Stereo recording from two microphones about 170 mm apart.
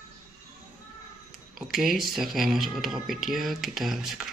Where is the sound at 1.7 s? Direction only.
Centre (ahead or behind).